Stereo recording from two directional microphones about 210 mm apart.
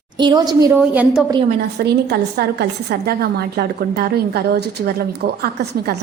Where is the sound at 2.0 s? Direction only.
50° right (ahead or behind).